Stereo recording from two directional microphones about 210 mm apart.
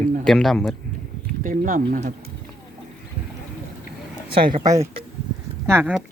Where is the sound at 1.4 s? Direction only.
40° right (ahead or behind).